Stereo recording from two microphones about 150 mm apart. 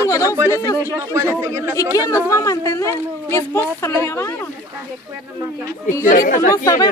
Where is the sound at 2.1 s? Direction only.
20° left (ahead or behind).